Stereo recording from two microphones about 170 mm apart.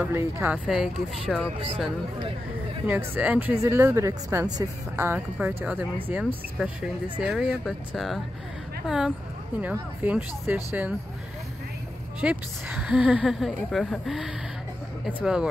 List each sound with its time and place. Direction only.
0.0 s speech: 10° right (ahead or behind)
2.9 s speech: 10° right (ahead or behind)
12.2 s speech: 5° right (ahead or behind)